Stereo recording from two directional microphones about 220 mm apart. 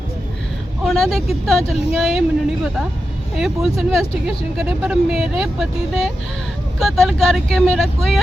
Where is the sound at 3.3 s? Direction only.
Centre (ahead or behind).